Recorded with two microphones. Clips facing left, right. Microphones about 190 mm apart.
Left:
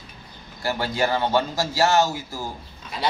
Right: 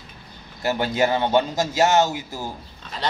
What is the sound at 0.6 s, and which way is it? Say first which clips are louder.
A man's voice: right 3 dB; 20° right (ahead or behind).